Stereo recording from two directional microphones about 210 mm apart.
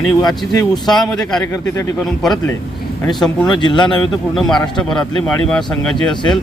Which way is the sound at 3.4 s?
20° left (ahead or behind).